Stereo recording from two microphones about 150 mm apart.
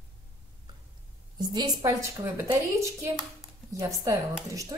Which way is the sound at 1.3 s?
30° right (ahead or behind).